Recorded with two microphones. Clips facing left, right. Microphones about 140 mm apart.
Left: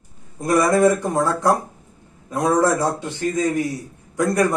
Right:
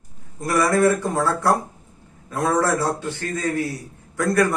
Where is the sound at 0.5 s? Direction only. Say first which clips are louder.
Left 2 dB; 20° left (ahead or behind).